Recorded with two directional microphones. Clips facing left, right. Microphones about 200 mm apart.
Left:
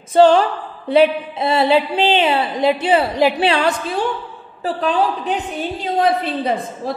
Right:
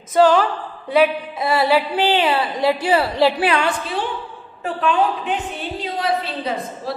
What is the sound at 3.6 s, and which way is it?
A woman's voice, 45° left (ahead or behind).